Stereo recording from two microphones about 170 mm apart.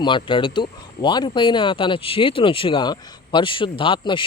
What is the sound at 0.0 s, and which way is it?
Speech, 30° left (ahead or behind).